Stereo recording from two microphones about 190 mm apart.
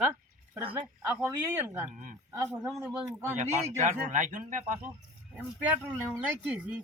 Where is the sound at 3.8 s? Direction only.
45° right (ahead or behind).